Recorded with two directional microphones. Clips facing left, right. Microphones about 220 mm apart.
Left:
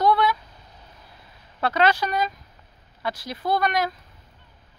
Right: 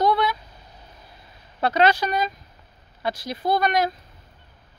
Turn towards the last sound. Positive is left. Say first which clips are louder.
# right 2 dB
turn(degrees=-20)  # may be behind; listen again after turning